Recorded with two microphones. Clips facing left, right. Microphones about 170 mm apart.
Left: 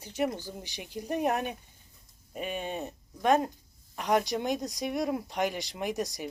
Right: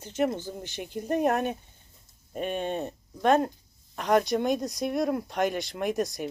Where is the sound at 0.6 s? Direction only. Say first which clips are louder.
Right 4 dB; 55° right (ahead or behind).